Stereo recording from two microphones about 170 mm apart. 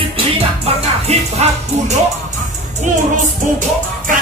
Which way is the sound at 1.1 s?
40° right (ahead or behind).